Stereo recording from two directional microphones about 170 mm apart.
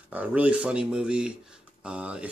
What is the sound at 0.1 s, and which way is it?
Speech, 10° right (ahead or behind).